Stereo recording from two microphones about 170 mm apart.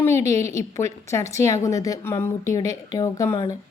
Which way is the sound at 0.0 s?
15° left (ahead or behind).